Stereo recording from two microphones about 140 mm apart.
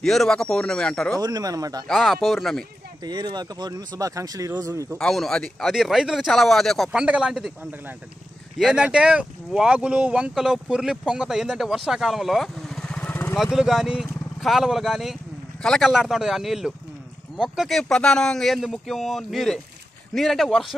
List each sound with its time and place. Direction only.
0.0 s speech: centre (ahead or behind)
1.2 s speech: 25° right (ahead or behind)
1.9 s speech: centre (ahead or behind)
3.0 s speech: 30° right (ahead or behind)
4.9 s speech: 5° left (ahead or behind)
13.4 s speech: centre (ahead or behind)